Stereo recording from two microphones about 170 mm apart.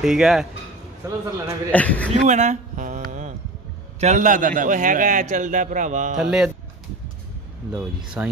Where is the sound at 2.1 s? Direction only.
45° right (ahead or behind).